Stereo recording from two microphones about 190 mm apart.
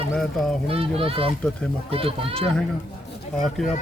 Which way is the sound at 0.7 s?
30° right (ahead or behind).